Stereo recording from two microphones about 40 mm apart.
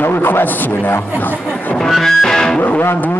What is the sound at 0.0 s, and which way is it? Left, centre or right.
A man's voice, left.